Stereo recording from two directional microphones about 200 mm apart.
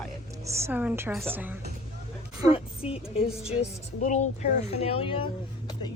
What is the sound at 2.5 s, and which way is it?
A woman's voice, 30° left (ahead or behind).